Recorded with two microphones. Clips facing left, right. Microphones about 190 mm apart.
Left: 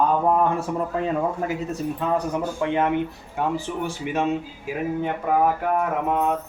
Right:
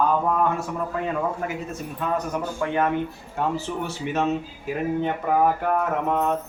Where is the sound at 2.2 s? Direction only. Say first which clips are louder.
Left 2 dB; 25° left (ahead or behind); by 6.3 s 10° left (ahead or behind).